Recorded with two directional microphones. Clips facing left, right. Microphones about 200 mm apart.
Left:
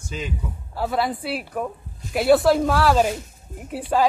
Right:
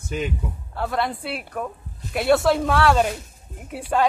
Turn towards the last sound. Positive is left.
turn(degrees=0)  # may be behind; listen again after turning